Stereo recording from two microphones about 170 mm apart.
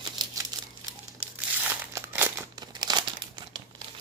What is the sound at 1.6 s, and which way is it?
Crumpling, 15° right (ahead or behind).